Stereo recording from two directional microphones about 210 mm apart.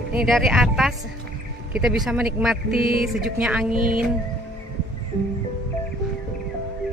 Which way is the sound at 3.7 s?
40° right (ahead or behind).